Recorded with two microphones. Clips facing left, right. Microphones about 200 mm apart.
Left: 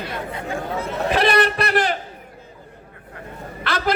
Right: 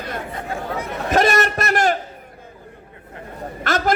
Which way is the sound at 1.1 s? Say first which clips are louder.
Right 1 dB; 45° right (ahead or behind).